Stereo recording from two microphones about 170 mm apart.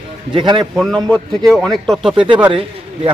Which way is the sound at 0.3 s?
30° right (ahead or behind).